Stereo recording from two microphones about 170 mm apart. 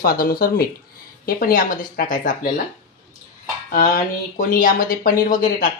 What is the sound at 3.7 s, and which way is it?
Speech, 50° left (ahead or behind).